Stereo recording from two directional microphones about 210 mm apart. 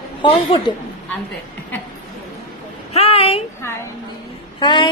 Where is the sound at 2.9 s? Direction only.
30° left (ahead or behind).